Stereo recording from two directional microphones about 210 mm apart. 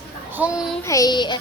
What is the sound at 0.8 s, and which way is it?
Child singing, 15° left (ahead or behind).